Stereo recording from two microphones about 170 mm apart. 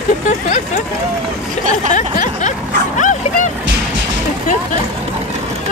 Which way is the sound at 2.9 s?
45° left (ahead or behind).